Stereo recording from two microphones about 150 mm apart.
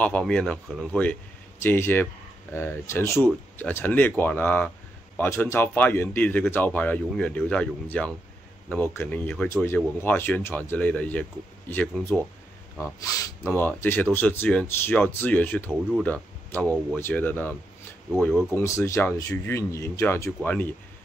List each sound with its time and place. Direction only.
0.0 s speech: 5° left (ahead or behind)